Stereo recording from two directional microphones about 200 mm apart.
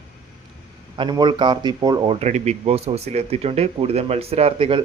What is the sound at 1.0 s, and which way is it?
Speech, 20° right (ahead or behind).